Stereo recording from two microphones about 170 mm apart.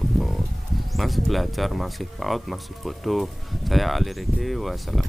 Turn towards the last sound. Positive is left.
turn(degrees=0)  # may be behind; listen again after turning